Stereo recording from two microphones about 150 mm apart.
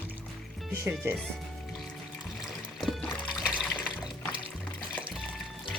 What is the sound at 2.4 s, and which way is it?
Music, centre (ahead or behind).